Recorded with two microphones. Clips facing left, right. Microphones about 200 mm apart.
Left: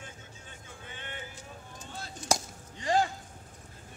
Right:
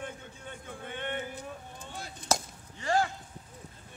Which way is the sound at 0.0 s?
60° right (ahead or behind).